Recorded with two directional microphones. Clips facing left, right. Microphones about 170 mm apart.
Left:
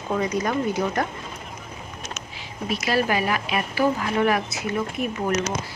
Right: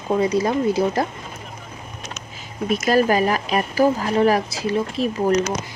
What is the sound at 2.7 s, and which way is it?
Speech, 45° right (ahead or behind).